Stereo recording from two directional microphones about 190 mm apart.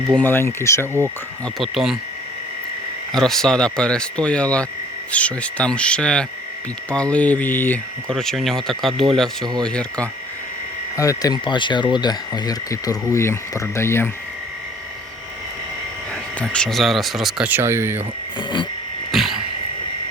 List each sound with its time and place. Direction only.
0.2 s speech: 10° left (ahead or behind)
1.5 s speech: centre (ahead or behind)
3.1 s speech: centre (ahead or behind)
10.9 s speech: 15° left (ahead or behind)
16.4 s speech: 5° left (ahead or behind); by 18.0 s 15° right (ahead or behind)
18.3 s a sound: 25° left (ahead or behind)
19.1 s a sound: centre (ahead or behind)